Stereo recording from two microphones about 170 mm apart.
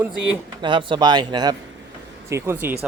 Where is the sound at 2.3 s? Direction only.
15° right (ahead or behind).